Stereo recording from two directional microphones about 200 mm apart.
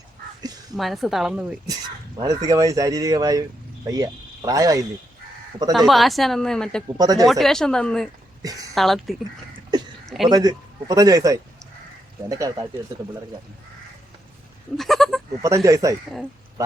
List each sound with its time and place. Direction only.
0.8 s a woman's voice: centre (ahead or behind)
1.6 s speech: 20° right (ahead or behind)
5.7 s a woman's voice: centre (ahead or behind)
7.0 s a man's voice: 20° right (ahead or behind)
7.3 s a woman's voice: centre (ahead or behind)
8.4 s a woman's voice: 20° right (ahead or behind)
8.7 s speech: centre (ahead or behind)
9.7 s a sound: 20° right (ahead or behind)
10.2 s a man's voice: 20° right (ahead or behind)
14.8 s goat: centre (ahead or behind)
15.4 s speech: 15° right (ahead or behind)